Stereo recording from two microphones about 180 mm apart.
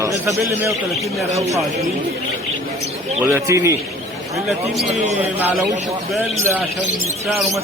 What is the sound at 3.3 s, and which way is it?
Speech, 15° right (ahead or behind).